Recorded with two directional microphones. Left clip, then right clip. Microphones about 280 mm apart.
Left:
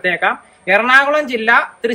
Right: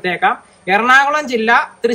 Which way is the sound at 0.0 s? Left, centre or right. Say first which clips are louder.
Even; centre.